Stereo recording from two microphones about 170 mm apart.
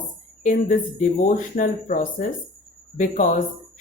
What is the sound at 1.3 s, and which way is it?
A woman's voice, 50° left (ahead or behind).